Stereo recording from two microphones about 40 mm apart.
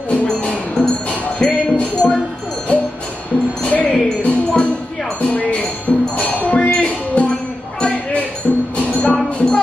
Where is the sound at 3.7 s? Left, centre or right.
Left.